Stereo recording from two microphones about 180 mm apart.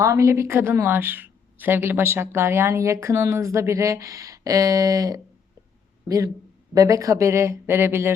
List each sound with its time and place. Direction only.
0.0 s a woman's voice: 15° right (ahead or behind)